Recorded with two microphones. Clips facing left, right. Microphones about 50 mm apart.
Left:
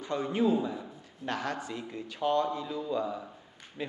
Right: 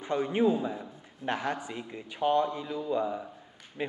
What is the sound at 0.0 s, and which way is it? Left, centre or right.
Speech, right.